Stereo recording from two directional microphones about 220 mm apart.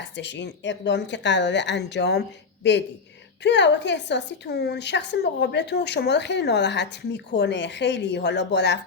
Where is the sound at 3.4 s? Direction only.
50° left (ahead or behind).